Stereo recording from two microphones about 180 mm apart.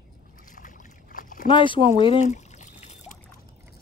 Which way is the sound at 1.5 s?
25° left (ahead or behind).